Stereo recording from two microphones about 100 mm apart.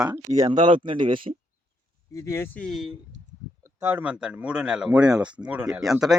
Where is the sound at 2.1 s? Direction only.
30° left (ahead or behind).